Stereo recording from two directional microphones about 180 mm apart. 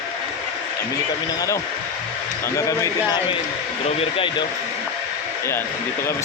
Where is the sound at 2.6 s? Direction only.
20° left (ahead or behind).